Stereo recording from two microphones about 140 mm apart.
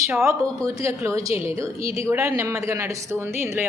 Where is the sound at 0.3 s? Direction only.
20° right (ahead or behind).